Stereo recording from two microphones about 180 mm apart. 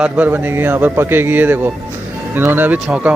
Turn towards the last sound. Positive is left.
turn(degrees=-10)  # may be behind; listen again after turning